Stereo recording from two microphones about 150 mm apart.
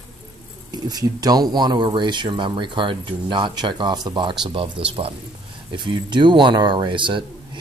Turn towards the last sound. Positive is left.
turn(degrees=-35)  # may be behind; listen again after turning